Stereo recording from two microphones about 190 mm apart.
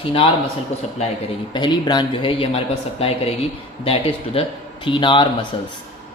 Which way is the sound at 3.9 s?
30° left (ahead or behind).